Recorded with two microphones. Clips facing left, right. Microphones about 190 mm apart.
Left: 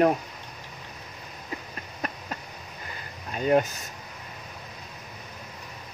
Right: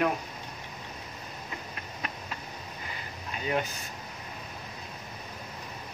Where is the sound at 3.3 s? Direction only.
45° left (ahead or behind).